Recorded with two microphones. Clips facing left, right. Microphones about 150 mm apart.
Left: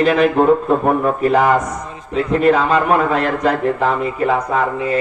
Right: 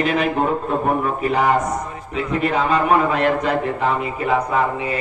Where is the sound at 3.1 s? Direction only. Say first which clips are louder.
Left 2 dB; 40° left (ahead or behind).